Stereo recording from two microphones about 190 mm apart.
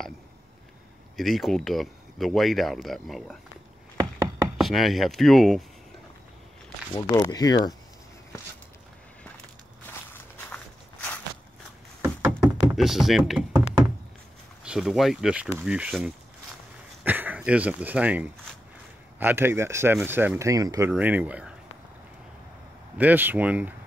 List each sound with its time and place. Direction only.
1.1 s speech: centre (ahead or behind)
4.6 s speech: centre (ahead or behind)
7.0 s speech: 20° left (ahead or behind)
9.8 s walk: 10° left (ahead or behind)
12.3 s a sound: centre (ahead or behind)
14.6 s speech: 5° right (ahead or behind)
22.9 s speech: 10° right (ahead or behind)